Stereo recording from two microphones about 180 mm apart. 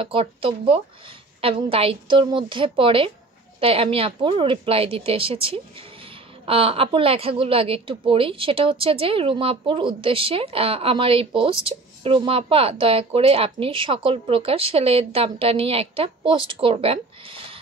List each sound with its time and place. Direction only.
0.0 s a woman's voice: 30° right (ahead or behind)